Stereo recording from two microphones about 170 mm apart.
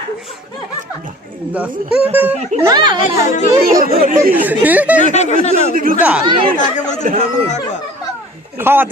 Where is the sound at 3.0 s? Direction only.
45° left (ahead or behind).